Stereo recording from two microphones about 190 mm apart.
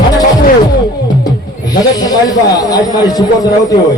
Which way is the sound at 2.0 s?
20° left (ahead or behind).